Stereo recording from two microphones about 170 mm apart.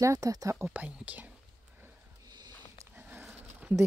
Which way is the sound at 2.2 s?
25° right (ahead or behind).